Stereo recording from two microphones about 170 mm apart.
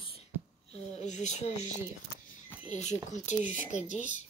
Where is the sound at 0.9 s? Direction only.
45° left (ahead or behind).